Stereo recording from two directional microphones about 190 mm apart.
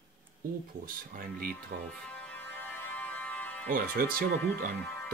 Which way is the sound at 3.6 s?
45° right (ahead or behind).